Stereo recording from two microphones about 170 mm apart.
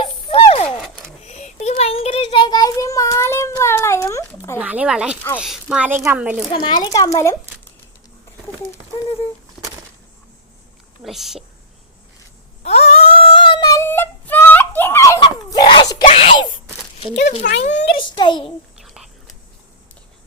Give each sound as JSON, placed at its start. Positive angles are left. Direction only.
{"t": 0.0, "sound": "a sound", "side_deg": 30}
{"t": 1.7, "sound": "child singing", "side_deg": 35}
{"t": 4.5, "sound": "speech", "side_deg": -10}
{"t": 6.5, "sound": "speech", "side_deg": 25}
{"t": 7.2, "sound": "a sound", "side_deg": 15}
{"t": 11.0, "sound": "a woman's voice", "side_deg": 0}
{"t": 12.6, "sound": "female singing", "side_deg": 35}
{"t": 16.0, "sound": "a sound", "side_deg": 35}
{"t": 17.6, "sound": "a child's voice", "side_deg": 35}
{"t": 19.0, "sound": "whispering", "side_deg": 0}